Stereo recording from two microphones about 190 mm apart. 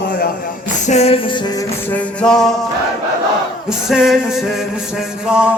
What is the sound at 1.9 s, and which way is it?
Speech, 5° left (ahead or behind).